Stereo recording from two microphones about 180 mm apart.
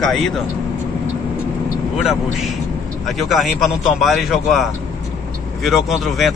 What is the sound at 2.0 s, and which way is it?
Speech, centre (ahead or behind).